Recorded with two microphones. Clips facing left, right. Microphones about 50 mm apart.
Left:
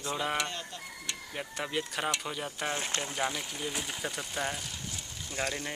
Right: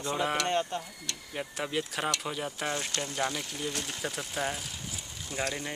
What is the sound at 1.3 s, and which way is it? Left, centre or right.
Speech, centre.